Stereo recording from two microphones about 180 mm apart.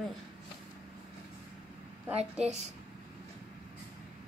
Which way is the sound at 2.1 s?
35° right (ahead or behind).